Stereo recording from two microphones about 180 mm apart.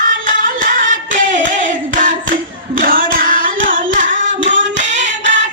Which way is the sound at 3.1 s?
50° right (ahead or behind).